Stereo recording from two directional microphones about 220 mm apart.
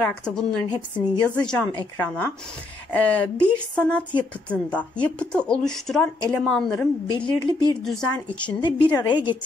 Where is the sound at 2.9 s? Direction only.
5° left (ahead or behind).